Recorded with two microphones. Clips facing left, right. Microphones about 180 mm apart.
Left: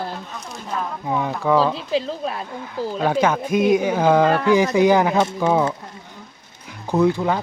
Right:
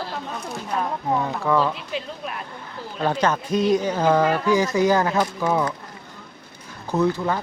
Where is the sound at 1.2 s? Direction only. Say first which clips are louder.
Left 5 dB; 10° left (ahead or behind).